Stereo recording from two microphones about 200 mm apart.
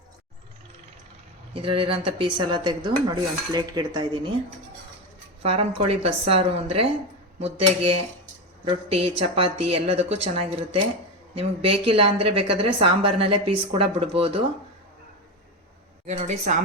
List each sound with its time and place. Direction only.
1.5 s dishes: 25° right (ahead or behind)
5.4 s dishes: 30° right (ahead or behind)
7.3 s a woman's voice: 30° right (ahead or behind)
11.9 s dishes: 30° right (ahead or behind)
16.0 s a woman's voice: 35° right (ahead or behind)